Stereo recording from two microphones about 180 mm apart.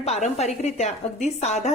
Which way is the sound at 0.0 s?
35° left (ahead or behind).